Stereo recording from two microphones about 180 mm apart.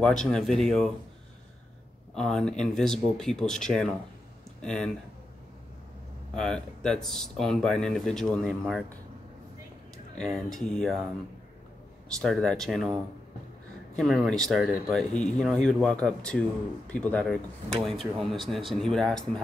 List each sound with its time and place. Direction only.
0.0 s speech: 5° left (ahead or behind)
2.1 s speech: 5° left (ahead or behind)
6.3 s speech: 5° left (ahead or behind)
10.1 s speech: centre (ahead or behind)
12.2 s speech: centre (ahead or behind)
13.9 s speech: centre (ahead or behind)
15.0 s speech: 40° left (ahead or behind)
15.3 s speech: 5° left (ahead or behind)